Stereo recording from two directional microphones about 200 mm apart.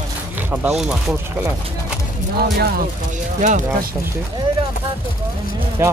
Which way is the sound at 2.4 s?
55° right (ahead or behind).